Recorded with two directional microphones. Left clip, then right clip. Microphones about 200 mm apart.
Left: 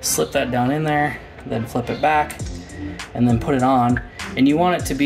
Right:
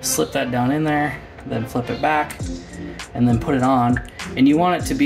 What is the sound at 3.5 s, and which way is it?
Speech, 50° left (ahead or behind).